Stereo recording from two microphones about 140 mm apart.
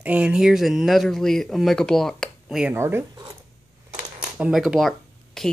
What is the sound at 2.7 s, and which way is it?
Speech, 15° right (ahead or behind).